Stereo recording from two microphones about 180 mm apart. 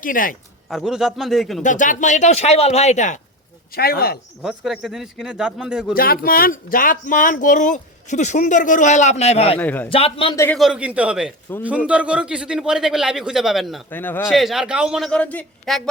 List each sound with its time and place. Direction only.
0.0 s speech: 50° left (ahead or behind)
0.7 s speech: centre (ahead or behind)
1.6 s speech: 45° left (ahead or behind)
3.7 s speech: 60° left (ahead or behind)
4.4 s speech: centre (ahead or behind)
5.9 s speech: 55° left (ahead or behind); by 9.6 s 35° left (ahead or behind)
9.6 s a man's voice: 10° left (ahead or behind)
9.9 s speech: 30° left (ahead or behind)
10.3 s a man's voice: 15° left (ahead or behind)
10.6 s speech: 5° right (ahead or behind)
11.5 s a man's voice: 10° left (ahead or behind)
11.9 s speech: 5° right (ahead or behind)
13.9 s a man's voice: 10° left (ahead or behind)
14.3 s speech: centre (ahead or behind)